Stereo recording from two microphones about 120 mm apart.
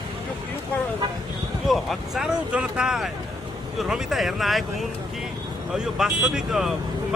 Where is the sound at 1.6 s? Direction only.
Centre (ahead or behind).